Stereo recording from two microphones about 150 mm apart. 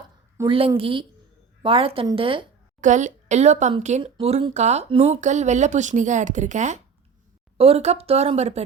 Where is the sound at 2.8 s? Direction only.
55° right (ahead or behind).